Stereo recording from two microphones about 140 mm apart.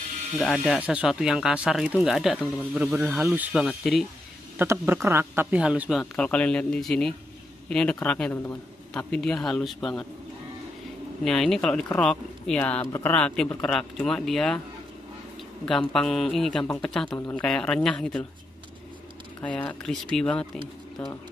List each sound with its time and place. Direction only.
0.4 s speech: centre (ahead or behind)
0.7 s speech: 10° right (ahead or behind)
4.6 s a man's voice: 15° right (ahead or behind)
6.1 s speech: 10° left (ahead or behind)
11.2 s speech: 5° left (ahead or behind)
15.6 s speech: 5° left (ahead or behind)
19.4 s speech: 10° left (ahead or behind)